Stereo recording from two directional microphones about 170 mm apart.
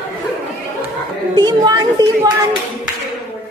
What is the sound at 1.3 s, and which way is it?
Speech, 25° right (ahead or behind).